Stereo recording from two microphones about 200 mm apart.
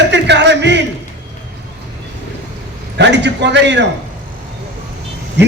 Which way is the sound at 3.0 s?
60° right (ahead or behind).